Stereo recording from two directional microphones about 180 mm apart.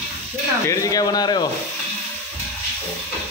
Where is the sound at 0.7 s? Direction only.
20° left (ahead or behind).